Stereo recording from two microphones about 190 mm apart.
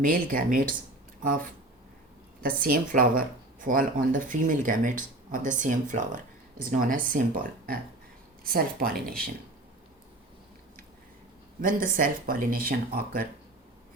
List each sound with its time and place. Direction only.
0.0 s speech: 45° right (ahead or behind)
2.4 s speech: 50° right (ahead or behind)
11.6 s speech: 45° right (ahead or behind)